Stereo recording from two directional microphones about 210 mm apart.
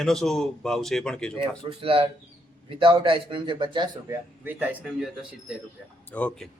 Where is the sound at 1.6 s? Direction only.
25° right (ahead or behind).